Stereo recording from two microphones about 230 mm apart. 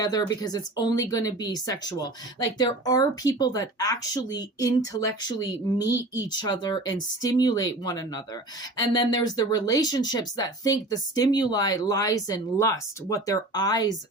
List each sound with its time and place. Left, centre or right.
0.0 s speech: centre